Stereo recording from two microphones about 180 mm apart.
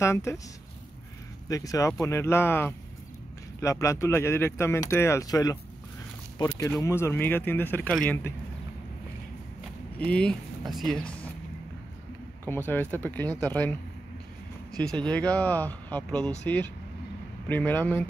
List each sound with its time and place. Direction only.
0.0 s speech: 15° left (ahead or behind)
1.5 s speech: 20° left (ahead or behind)
9.9 s speech: 5° left (ahead or behind)
12.4 s speech: 10° left (ahead or behind)
14.8 s speech: 5° left (ahead or behind)